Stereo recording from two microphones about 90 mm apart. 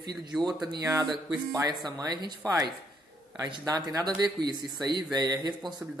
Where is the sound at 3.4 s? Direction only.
45° right (ahead or behind).